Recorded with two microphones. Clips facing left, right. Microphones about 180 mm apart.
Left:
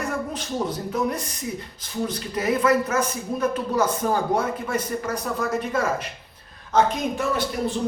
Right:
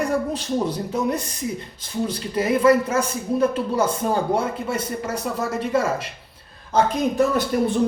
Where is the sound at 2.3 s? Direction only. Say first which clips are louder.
Right 4 dB; 30° right (ahead or behind).